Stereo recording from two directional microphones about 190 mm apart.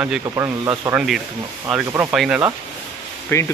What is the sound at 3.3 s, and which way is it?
Speech, 15° left (ahead or behind).